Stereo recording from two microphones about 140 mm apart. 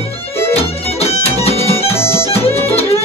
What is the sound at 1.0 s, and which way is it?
Music, 45° left (ahead or behind).